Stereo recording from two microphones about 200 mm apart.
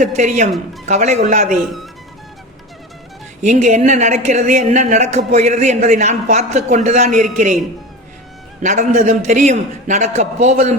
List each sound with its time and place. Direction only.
0.0 s speech: 35° right (ahead or behind)
1.6 s speech: centre (ahead or behind)
3.4 s speech: 35° right (ahead or behind)
8.6 s speech: 35° right (ahead or behind)